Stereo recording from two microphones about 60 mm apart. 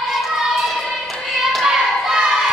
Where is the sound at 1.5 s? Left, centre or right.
Centre.